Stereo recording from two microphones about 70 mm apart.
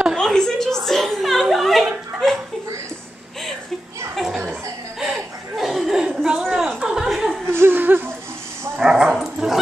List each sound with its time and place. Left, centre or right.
0.1 s a sound: centre
0.8 s chuckle: centre
4.1 s children playing: centre
5.6 s chuckle: centre
6.4 s a sound: centre
7.4 s laughter: right
8.8 s dog: centre